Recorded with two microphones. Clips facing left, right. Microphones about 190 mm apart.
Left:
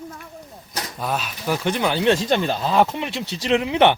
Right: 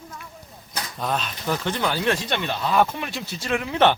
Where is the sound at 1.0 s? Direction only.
5° left (ahead or behind).